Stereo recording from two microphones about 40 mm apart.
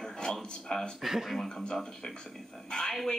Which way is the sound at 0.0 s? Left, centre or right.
Centre.